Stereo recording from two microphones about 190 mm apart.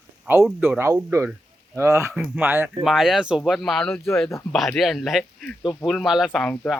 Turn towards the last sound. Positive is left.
turn(degrees=5)  # may be behind; listen again after turning